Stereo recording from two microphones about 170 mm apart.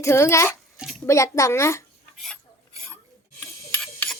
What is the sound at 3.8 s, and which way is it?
Clock, 5° left (ahead or behind).